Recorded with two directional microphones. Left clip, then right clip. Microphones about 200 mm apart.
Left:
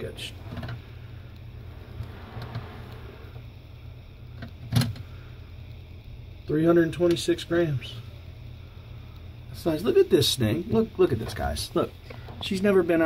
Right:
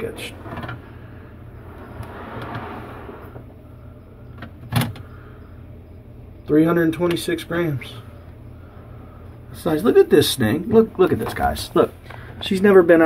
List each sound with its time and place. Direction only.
6.5 s speech: 30° left (ahead or behind)
9.6 s speech: 30° left (ahead or behind); by 13.0 s 10° left (ahead or behind)